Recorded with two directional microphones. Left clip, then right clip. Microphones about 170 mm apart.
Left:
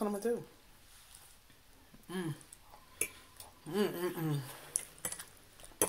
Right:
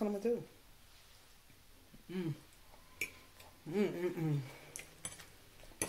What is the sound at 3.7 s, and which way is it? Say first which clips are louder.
Speech: left 2 dB; 35° left (ahead or behind).